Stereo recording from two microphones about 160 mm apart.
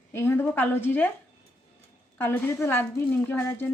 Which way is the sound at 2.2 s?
15° left (ahead or behind).